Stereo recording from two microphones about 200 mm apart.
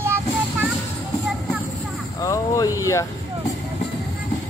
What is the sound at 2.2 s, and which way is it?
Speech, 15° left (ahead or behind).